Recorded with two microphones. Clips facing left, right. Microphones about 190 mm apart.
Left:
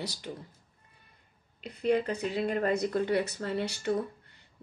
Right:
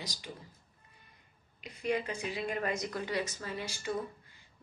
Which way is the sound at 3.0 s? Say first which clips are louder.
Left 7 dB; 60° left (ahead or behind).